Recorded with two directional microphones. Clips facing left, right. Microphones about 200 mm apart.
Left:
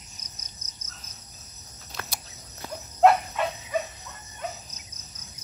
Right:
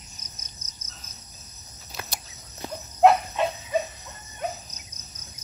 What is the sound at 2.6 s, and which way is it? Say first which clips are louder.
Cricket: right 1 dB; 10° right (ahead or behind).